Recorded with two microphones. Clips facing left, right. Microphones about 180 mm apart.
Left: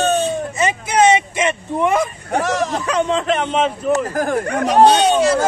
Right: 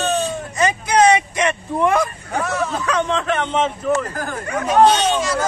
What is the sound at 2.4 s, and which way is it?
Speech, 90° left.